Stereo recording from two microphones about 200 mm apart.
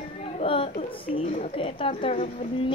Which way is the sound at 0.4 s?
25° left (ahead or behind).